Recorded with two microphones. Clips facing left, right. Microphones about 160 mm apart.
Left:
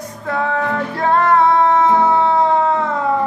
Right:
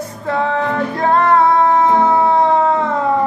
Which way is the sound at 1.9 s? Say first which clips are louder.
Right 1 dB; 20° right (ahead or behind).